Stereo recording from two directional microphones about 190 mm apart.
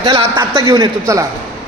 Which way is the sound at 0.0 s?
30° right (ahead or behind).